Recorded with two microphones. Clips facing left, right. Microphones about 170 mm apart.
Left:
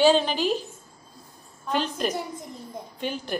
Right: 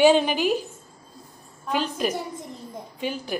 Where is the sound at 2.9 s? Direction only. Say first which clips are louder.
Right 2 dB; 5° right (ahead or behind).